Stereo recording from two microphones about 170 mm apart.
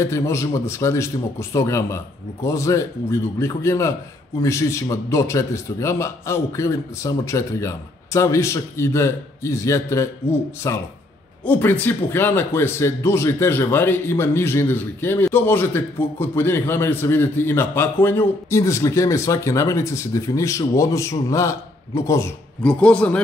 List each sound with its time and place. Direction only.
0.0 s a man's voice: 15° left (ahead or behind)
22.6 s a man's voice: 5° left (ahead or behind)